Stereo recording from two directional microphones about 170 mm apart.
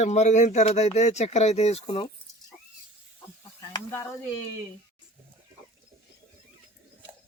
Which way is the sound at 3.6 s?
15° left (ahead or behind).